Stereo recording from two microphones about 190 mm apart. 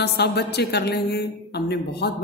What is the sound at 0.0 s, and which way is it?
Speech, 60° left (ahead or behind).